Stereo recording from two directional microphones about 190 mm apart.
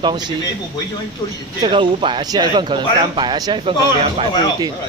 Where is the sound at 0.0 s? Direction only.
25° right (ahead or behind).